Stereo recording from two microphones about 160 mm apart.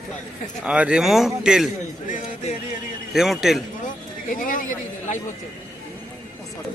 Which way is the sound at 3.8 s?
55° left (ahead or behind).